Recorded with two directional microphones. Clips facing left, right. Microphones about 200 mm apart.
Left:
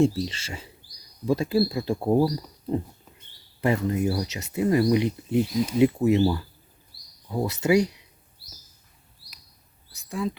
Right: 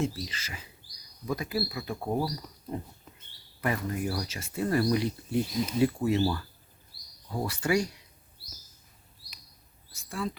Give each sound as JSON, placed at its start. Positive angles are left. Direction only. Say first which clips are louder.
{"t": 0.0, "sound": "speech", "louder": "left 10 dB", "side_deg": 30}
{"t": 3.6, "sound": "speech", "louder": "left 7 dB", "side_deg": 25}
{"t": 9.9, "sound": "speech", "louder": "left 5 dB", "side_deg": 15}